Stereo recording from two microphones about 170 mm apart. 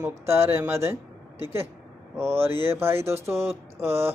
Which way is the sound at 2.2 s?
15° right (ahead or behind).